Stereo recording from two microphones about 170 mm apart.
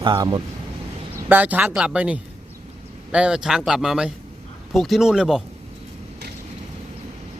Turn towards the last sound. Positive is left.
turn(degrees=-5)  # may be behind; listen again after turning